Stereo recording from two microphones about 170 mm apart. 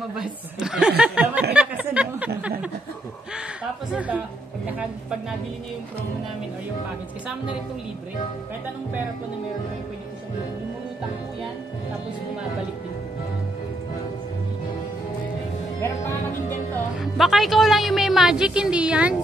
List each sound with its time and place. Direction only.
0.1 s speech: 5° right (ahead or behind)
1.5 s a sound: 5° right (ahead or behind)
3.9 s a woman's voice: 10° right (ahead or behind)
15.8 s speech: 15° left (ahead or behind)
17.0 s speech: centre (ahead or behind)